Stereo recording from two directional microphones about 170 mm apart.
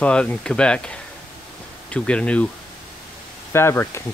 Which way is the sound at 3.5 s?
15° left (ahead or behind).